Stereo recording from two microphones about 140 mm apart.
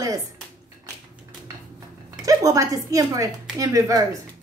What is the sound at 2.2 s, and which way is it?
A woman's voice, 25° right (ahead or behind).